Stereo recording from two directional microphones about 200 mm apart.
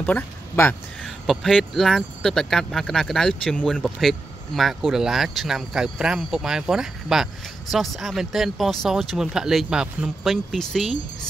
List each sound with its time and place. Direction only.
0.0 s speech: 5° left (ahead or behind)